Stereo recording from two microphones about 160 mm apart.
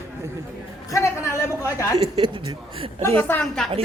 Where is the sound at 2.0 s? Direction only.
35° right (ahead or behind).